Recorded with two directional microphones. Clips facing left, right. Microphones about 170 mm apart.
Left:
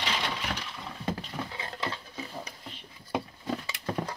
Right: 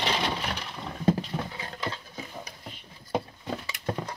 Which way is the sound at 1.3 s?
30° right (ahead or behind).